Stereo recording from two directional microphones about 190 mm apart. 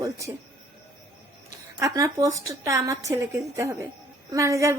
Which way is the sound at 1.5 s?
20° right (ahead or behind).